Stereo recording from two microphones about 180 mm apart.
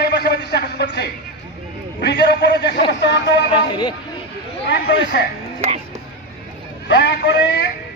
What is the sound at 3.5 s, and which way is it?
Speech, 25° left (ahead or behind).